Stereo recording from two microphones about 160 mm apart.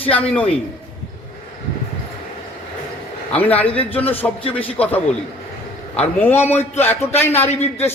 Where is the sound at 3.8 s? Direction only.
10° left (ahead or behind).